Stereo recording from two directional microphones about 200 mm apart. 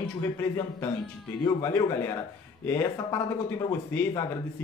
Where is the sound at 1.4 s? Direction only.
15° left (ahead or behind).